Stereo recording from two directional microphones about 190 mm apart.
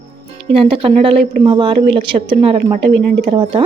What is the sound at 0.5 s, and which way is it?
Speech, 30° right (ahead or behind).